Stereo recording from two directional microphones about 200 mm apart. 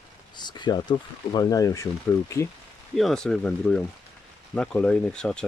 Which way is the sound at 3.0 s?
Centre (ahead or behind).